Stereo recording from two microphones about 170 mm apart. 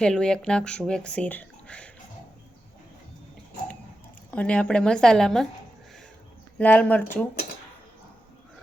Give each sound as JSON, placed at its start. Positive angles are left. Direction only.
{"t": 0.0, "sound": "speech", "side_deg": 5}
{"t": 4.3, "sound": "speech", "side_deg": 5}
{"t": 6.6, "sound": "speech", "side_deg": 10}